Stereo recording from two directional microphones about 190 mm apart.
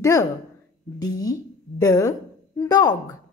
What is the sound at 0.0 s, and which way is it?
A woman's voice, 15° left (ahead or behind).